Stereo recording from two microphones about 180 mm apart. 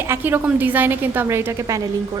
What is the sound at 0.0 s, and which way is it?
A woman's voice, 10° right (ahead or behind).